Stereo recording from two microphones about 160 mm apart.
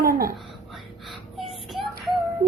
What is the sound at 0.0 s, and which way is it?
Whispering, 65° right (ahead or behind).